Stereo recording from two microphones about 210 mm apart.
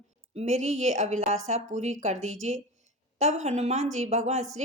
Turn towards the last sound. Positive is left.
turn(degrees=-30)  # may be behind; listen again after turning